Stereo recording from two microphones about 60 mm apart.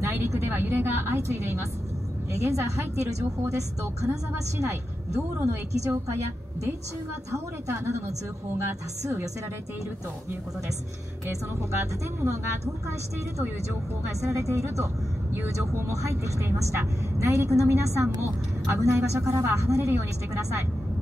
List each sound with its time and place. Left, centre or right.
0.0 s a woman's voice: right
2.3 s a woman's voice: right
9.0 s a woman's voice: right
11.8 s a woman's voice: right
14.0 s a woman's voice: right